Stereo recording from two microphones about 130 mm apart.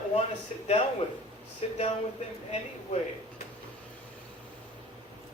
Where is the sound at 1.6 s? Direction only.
55° left (ahead or behind).